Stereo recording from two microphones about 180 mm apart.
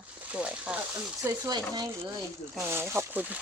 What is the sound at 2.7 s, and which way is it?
Speech, 15° right (ahead or behind).